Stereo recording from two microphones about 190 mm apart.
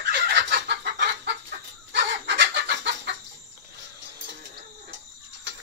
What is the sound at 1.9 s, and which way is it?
Chicken, 65° right (ahead or behind).